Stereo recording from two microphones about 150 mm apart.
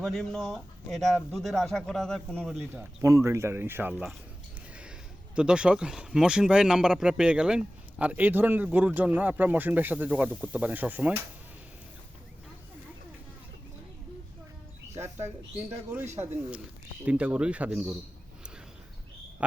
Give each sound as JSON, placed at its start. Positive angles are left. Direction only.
{"t": 0.0, "sound": "speech", "side_deg": 0}
{"t": 3.0, "sound": "speech", "side_deg": -20}
{"t": 14.9, "sound": "speech", "side_deg": -15}
{"t": 17.1, "sound": "speech", "side_deg": -10}